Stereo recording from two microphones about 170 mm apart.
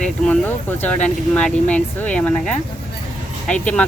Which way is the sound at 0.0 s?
10° left (ahead or behind).